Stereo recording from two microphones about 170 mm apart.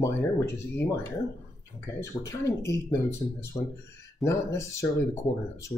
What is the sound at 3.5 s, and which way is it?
Speech, 20° left (ahead or behind).